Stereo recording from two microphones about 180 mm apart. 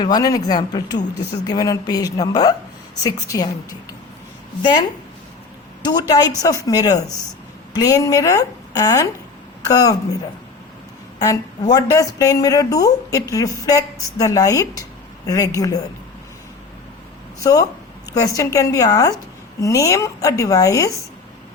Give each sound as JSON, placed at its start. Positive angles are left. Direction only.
{"t": 0.0, "sound": "a woman's voice", "side_deg": 20}
{"t": 11.2, "sound": "a woman's voice", "side_deg": 20}
{"t": 17.4, "sound": "a woman's voice", "side_deg": 20}